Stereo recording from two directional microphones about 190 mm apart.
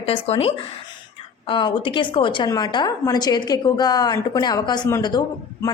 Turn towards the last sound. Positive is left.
turn(degrees=20)  # may be behind; listen again after turning